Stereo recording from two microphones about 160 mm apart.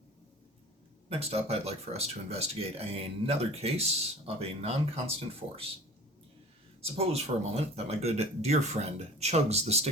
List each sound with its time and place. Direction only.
1.1 s speech: 40° right (ahead or behind)
6.8 s speech: 40° right (ahead or behind)